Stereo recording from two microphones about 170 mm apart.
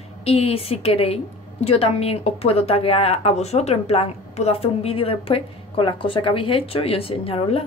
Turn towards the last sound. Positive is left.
turn(degrees=35)  # may be behind; listen again after turning